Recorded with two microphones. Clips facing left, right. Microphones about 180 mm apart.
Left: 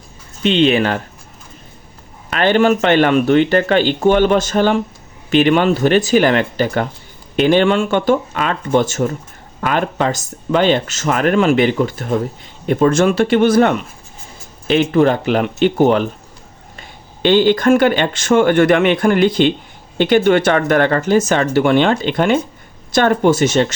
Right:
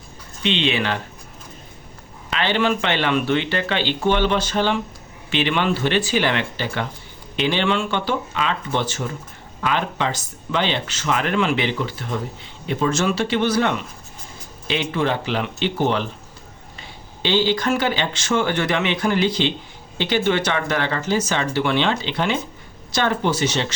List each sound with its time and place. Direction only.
0.4 s speech: 45° left (ahead or behind)
2.3 s speech: 50° left (ahead or behind)
17.2 s speech: 55° left (ahead or behind)